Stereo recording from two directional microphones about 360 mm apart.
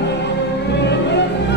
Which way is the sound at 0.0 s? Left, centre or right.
Left.